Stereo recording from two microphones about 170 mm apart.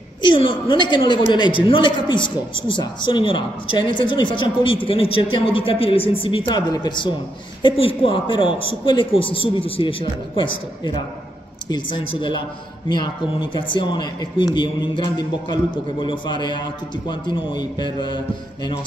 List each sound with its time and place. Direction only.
0.2 s a woman's voice: 30° left (ahead or behind)